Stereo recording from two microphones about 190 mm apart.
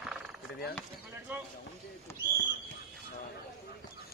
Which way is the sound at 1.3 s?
10° right (ahead or behind).